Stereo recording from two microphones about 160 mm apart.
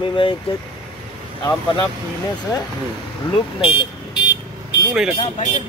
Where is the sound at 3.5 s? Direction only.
30° left (ahead or behind).